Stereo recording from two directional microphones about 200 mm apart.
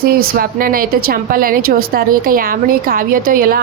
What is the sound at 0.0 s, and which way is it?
A woman's voice, 50° right (ahead or behind).